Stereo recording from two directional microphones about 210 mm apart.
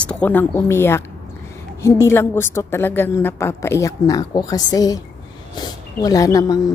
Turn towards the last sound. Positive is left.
turn(degrees=15)  # may be behind; listen again after turning